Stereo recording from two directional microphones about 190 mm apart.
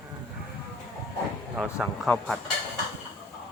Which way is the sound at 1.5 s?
Centre (ahead or behind).